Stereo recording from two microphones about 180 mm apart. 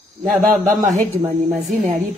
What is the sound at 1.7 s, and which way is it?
Speech, 45° right (ahead or behind).